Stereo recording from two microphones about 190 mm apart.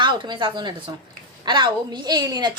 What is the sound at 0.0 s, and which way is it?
A woman's voice, 25° right (ahead or behind).